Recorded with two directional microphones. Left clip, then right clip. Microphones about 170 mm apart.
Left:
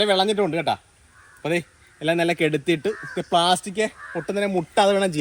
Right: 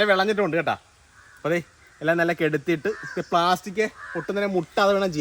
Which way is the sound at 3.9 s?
5° right (ahead or behind).